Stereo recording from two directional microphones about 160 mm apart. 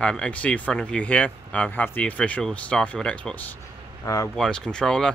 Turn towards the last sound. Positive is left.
turn(degrees=5)  # may be behind; listen again after turning